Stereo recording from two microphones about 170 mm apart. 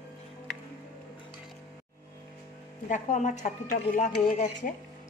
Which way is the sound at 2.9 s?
45° left (ahead or behind).